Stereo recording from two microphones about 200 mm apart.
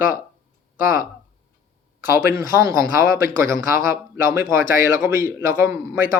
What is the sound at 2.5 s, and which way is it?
Speech, 15° right (ahead or behind).